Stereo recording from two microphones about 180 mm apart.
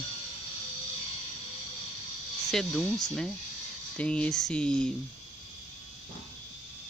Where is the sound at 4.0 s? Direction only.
5° left (ahead or behind).